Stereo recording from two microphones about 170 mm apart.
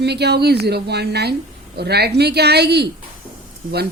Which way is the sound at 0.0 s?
75° right (ahead or behind).